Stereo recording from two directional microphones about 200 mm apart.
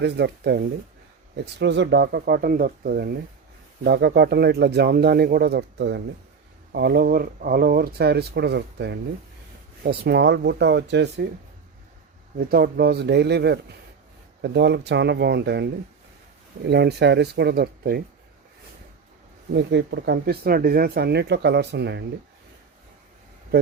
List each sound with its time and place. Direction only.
0.0 s speech: 55° right (ahead or behind)
12.5 s speech: 50° right (ahead or behind)
19.5 s speech: 60° right (ahead or behind)